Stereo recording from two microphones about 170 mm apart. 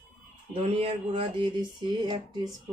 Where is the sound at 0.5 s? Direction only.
35° right (ahead or behind).